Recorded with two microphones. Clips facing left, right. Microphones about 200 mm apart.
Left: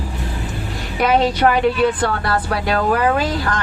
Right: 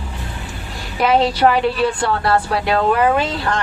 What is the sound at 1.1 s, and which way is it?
Speech, 30° right (ahead or behind).